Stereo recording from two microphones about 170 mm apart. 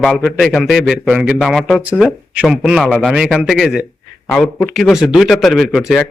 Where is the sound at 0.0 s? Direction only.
Centre (ahead or behind).